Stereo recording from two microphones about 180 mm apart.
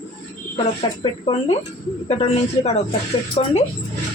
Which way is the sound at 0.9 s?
25° left (ahead or behind).